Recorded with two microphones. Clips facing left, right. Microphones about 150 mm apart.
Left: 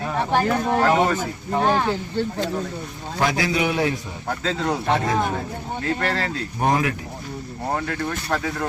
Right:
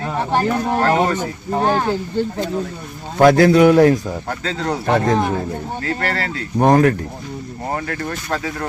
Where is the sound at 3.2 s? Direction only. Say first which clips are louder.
Right 12 dB; 50° right (ahead or behind).